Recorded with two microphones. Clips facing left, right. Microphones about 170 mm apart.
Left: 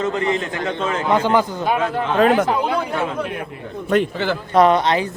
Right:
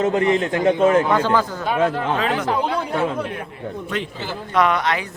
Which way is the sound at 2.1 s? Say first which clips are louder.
Left 7 dB; 50° left (ahead or behind).